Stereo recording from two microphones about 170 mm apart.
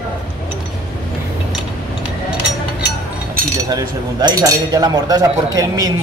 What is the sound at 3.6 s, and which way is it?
Speech, 20° right (ahead or behind).